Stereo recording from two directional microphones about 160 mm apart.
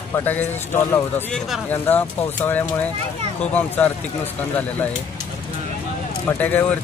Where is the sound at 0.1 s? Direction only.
15° left (ahead or behind).